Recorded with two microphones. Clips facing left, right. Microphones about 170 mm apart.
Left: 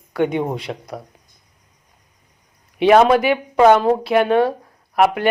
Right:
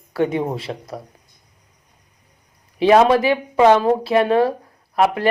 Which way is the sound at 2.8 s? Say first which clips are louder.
Left 1 dB; 30° right (ahead or behind).